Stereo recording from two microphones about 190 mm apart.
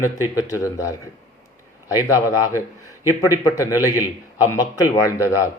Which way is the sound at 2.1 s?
20° left (ahead or behind).